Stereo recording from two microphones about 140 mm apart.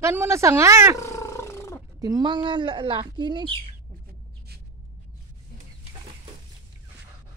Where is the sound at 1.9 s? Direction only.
25° right (ahead or behind).